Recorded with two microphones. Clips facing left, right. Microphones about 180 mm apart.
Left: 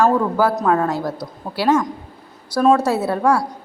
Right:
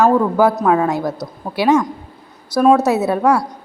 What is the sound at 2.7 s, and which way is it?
Speech, 5° right (ahead or behind).